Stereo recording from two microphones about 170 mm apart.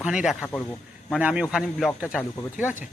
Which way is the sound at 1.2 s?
10° right (ahead or behind).